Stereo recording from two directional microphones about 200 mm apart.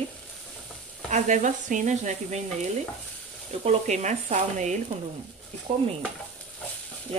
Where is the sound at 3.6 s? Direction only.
35° right (ahead or behind).